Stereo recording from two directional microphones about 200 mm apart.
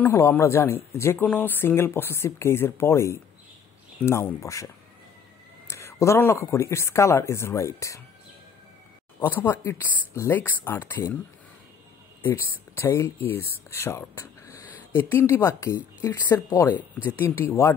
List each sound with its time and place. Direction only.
0.0 s speech: 10° left (ahead or behind)
5.7 s speech: 15° left (ahead or behind)
9.3 s speech: 10° left (ahead or behind)
12.3 s speech: 15° left (ahead or behind)